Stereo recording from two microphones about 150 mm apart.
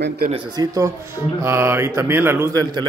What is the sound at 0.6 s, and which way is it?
Speech, 25° right (ahead or behind).